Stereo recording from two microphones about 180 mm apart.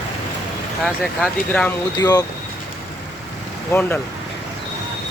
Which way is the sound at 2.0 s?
20° left (ahead or behind).